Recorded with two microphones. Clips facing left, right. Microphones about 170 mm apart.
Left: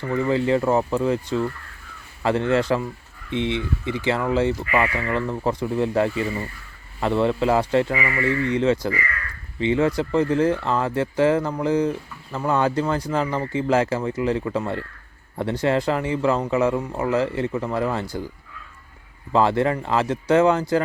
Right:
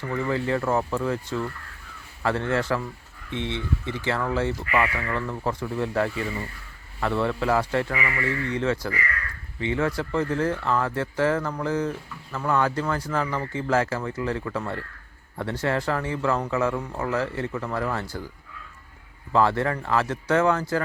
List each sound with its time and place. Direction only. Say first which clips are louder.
0.0 s speech: left 5 dB; 15° left (ahead or behind)
19.3 s speech: left 3 dB; 20° left (ahead or behind)